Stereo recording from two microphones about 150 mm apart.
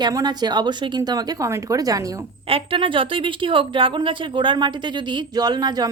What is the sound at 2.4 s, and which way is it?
Speech, 35° right (ahead or behind).